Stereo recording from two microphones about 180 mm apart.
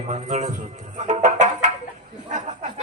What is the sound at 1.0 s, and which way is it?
Music, 40° right (ahead or behind).